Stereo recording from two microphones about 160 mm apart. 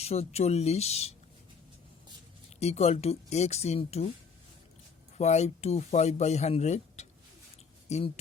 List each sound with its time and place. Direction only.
0.0 s speech: 40° left (ahead or behind)
2.6 s speech: 40° left (ahead or behind)
5.1 s speech: 45° left (ahead or behind)